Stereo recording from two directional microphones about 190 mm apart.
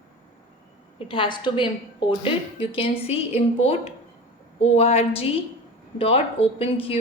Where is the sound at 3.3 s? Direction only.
35° left (ahead or behind).